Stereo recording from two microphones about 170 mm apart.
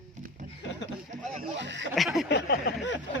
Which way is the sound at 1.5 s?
90° right.